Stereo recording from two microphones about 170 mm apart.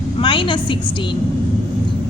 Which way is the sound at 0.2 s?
30° left (ahead or behind).